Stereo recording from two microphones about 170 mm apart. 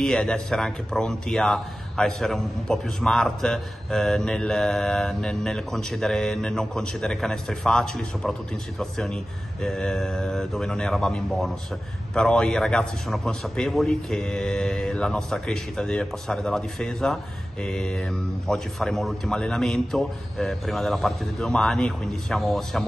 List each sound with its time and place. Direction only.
0.0 s speech: 5° left (ahead or behind)